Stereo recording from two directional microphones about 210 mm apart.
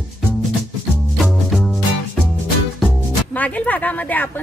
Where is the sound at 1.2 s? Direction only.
Centre (ahead or behind).